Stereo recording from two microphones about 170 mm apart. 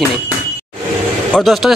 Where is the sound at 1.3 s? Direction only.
Centre (ahead or behind).